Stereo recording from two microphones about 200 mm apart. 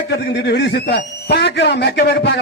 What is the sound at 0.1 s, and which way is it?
A man's voice, 50° left (ahead or behind).